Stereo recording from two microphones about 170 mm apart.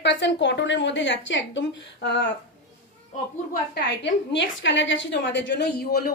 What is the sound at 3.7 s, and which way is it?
A woman's voice, 85° left.